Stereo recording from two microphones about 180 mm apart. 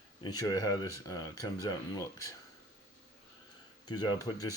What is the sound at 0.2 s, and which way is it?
Speech, 20° left (ahead or behind).